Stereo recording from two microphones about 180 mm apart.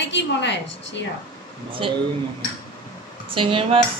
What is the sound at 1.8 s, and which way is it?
Speech, 30° right (ahead or behind).